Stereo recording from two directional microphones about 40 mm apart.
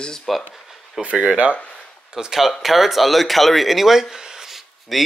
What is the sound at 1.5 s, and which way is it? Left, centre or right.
Speech, left.